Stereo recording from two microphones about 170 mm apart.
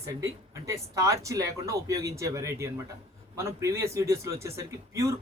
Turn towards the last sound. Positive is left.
turn(degrees=-15)  # may be behind; listen again after turning